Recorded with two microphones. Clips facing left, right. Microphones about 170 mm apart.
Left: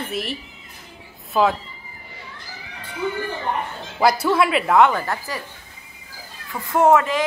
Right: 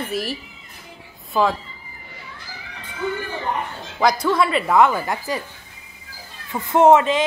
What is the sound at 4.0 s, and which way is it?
Speech, 5° left (ahead or behind).